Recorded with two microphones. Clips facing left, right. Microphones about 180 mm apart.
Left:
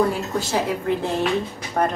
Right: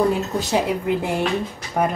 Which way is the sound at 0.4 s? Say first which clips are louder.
Right 2 dB; 15° right (ahead or behind).